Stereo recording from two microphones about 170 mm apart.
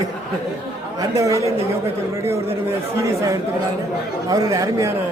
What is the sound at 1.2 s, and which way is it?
Speech, 20° right (ahead or behind).